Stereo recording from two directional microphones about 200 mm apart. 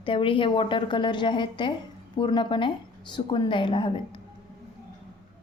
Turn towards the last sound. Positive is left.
turn(degrees=25)  # may be behind; listen again after turning